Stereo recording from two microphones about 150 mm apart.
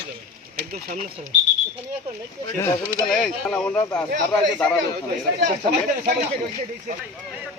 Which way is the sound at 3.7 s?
25° left (ahead or behind).